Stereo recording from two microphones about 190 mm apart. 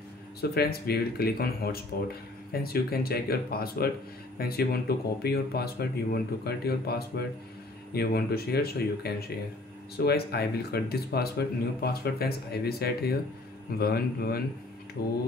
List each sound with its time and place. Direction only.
0.4 s speech: 55° left (ahead or behind)